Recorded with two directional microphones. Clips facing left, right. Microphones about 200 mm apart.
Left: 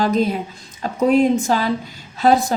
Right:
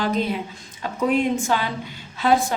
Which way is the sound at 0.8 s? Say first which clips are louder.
Left 6 dB; 40° left (ahead or behind).